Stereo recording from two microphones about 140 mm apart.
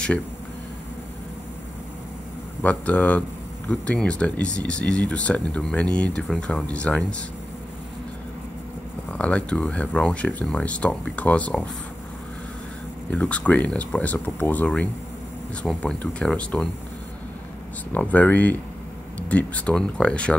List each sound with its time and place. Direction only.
2.6 s speech: 10° left (ahead or behind)
9.1 s speech: 10° left (ahead or behind)
13.1 s speech: 10° left (ahead or behind)
17.9 s speech: 10° left (ahead or behind)